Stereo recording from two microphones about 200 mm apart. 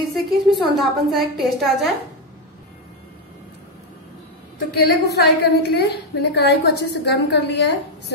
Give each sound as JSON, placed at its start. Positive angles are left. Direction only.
{"t": 0.1, "sound": "a woman's voice", "side_deg": 0}
{"t": 4.8, "sound": "a woman's voice", "side_deg": 55}